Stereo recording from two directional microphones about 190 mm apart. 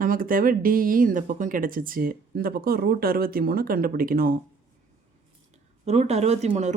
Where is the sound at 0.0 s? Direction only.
50° right (ahead or behind).